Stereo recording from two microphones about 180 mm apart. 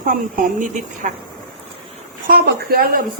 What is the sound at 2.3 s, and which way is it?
Speech, 55° right (ahead or behind).